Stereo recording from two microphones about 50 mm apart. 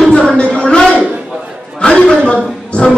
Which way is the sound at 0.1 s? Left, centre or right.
Centre.